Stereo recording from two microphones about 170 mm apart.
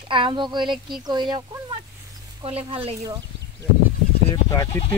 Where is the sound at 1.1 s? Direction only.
25° right (ahead or behind).